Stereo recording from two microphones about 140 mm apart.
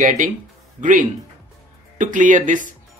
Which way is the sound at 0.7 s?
65° right (ahead or behind).